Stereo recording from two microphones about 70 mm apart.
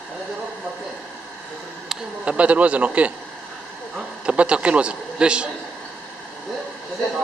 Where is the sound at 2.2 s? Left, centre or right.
Centre.